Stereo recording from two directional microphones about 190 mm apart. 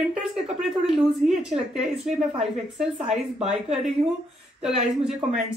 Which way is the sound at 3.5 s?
Centre (ahead or behind).